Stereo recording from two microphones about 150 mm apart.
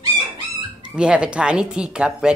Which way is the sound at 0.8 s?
5° right (ahead or behind).